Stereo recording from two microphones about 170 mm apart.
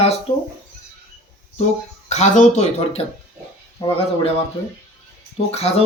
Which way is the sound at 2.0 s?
45° left (ahead or behind).